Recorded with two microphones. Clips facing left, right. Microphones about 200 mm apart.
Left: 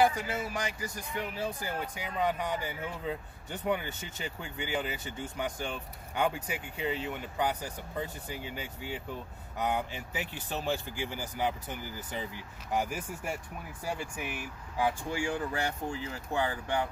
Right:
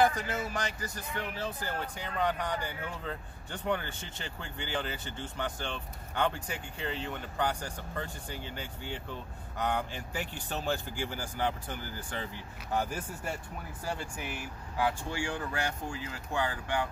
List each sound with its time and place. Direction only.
0.0 s speech: 10° left (ahead or behind)
14.8 s speech: 20° left (ahead or behind)